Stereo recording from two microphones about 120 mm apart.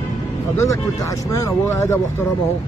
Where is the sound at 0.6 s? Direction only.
25° left (ahead or behind).